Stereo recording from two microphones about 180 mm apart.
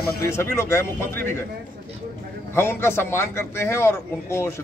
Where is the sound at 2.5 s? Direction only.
15° left (ahead or behind).